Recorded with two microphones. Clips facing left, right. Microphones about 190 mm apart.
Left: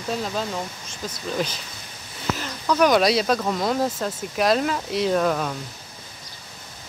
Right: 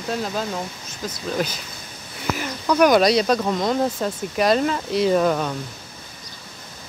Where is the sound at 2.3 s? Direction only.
10° right (ahead or behind).